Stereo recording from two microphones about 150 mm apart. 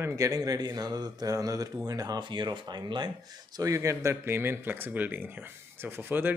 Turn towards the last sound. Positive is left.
turn(degrees=-15)  # may be behind; listen again after turning